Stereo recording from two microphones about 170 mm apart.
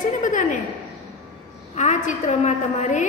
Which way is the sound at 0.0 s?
50° left (ahead or behind).